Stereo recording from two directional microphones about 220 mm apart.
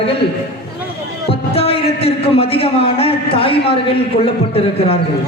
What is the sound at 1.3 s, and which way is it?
A man's voice, 25° left (ahead or behind).